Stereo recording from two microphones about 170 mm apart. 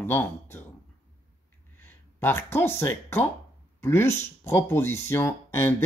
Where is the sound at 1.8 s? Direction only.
10° left (ahead or behind).